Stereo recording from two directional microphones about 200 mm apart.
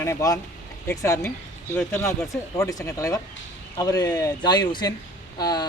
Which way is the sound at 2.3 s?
15° left (ahead or behind).